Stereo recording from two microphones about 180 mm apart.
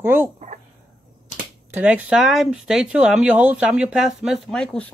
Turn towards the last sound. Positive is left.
turn(degrees=5)  # may be behind; listen again after turning